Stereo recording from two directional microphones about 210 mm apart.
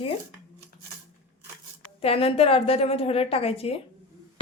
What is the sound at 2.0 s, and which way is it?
A woman's voice, 30° left (ahead or behind).